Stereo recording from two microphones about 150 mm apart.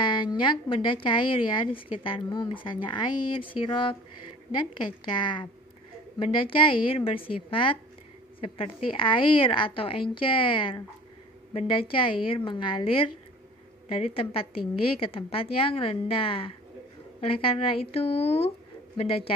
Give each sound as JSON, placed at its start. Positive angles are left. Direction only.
{"t": 0.0, "sound": "a woman's voice", "side_deg": 30}
{"t": 5.0, "sound": "a woman's voice", "side_deg": 30}